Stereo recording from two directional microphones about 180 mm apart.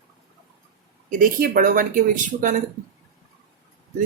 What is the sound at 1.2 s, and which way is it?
Speech, 50° right (ahead or behind).